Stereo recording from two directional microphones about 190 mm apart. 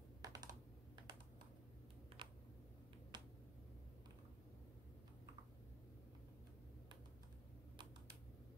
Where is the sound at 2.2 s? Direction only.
25° right (ahead or behind).